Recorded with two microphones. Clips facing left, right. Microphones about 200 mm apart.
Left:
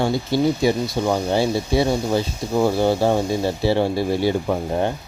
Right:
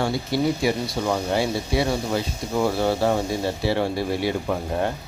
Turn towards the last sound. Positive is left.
turn(degrees=30)  # may be behind; listen again after turning